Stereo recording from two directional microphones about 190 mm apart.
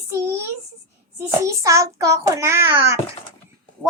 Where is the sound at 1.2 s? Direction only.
15° right (ahead or behind).